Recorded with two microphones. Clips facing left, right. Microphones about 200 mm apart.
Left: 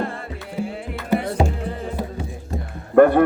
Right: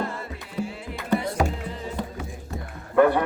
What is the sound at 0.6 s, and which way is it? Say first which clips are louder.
Music: left 3 dB; 55° left (ahead or behind).